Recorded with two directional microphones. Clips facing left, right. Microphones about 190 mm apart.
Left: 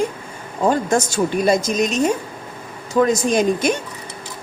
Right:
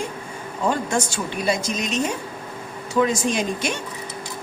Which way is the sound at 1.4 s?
45° left (ahead or behind).